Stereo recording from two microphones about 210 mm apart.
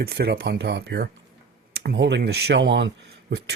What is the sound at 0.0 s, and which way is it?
Speech, 50° right (ahead or behind).